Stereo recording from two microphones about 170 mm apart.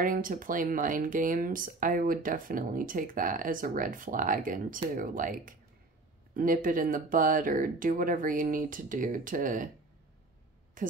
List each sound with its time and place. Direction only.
0.0 s speech: 55° right (ahead or behind)
10.8 s speech: 50° right (ahead or behind)